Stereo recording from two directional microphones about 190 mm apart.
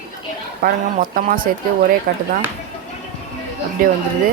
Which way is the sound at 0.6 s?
50° right (ahead or behind).